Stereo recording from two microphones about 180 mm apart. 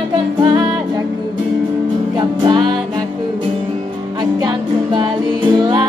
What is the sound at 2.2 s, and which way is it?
Music, 25° right (ahead or behind).